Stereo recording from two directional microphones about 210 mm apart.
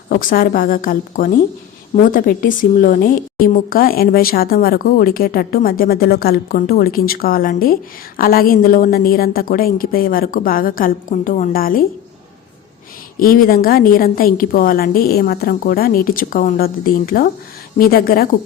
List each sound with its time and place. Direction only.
0.1 s a woman's voice: 40° left (ahead or behind)
13.1 s a woman's voice: 45° left (ahead or behind)